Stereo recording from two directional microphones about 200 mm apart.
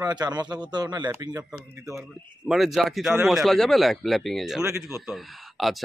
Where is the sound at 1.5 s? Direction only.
5° right (ahead or behind).